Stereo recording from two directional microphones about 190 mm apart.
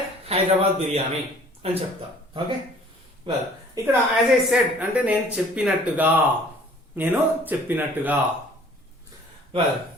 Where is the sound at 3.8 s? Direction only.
15° right (ahead or behind).